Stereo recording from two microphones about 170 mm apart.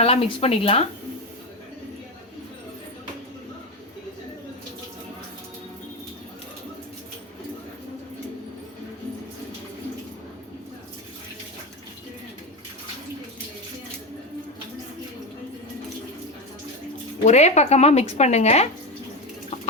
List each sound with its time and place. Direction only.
0.0 s speech: 35° left (ahead or behind)
17.2 s speech: 40° left (ahead or behind)